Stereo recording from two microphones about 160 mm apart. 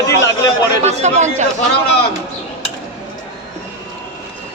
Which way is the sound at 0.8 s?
45° right (ahead or behind).